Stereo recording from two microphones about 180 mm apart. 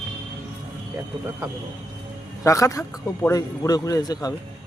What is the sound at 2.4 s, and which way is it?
A man's voice, 20° left (ahead or behind).